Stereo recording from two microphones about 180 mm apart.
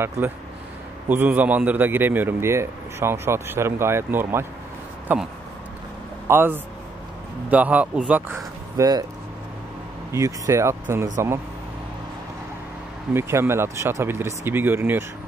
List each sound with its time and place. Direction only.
1.0 s a man's voice: 10° right (ahead or behind)
10.1 s a man's voice: 15° right (ahead or behind)
13.1 s a man's voice: 15° right (ahead or behind)